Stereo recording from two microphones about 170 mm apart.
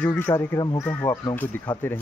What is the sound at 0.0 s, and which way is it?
Speech, 15° left (ahead or behind).